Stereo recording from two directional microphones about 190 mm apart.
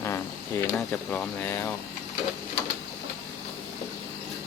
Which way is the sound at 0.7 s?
5° left (ahead or behind).